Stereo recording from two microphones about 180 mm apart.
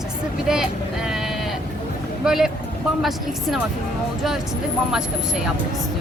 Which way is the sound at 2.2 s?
Centre (ahead or behind).